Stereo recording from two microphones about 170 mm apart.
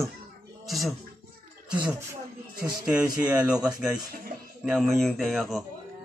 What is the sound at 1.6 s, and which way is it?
Speech, 10° right (ahead or behind).